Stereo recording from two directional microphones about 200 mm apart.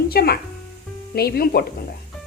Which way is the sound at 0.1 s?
50° left (ahead or behind).